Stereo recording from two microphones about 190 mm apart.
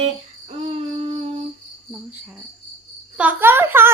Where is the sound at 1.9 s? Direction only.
5° right (ahead or behind).